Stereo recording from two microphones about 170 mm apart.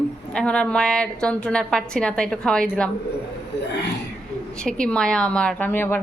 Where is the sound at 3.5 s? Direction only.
90° left.